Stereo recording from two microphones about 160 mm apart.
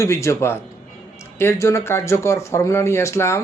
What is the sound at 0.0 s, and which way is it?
Speech, 20° left (ahead or behind).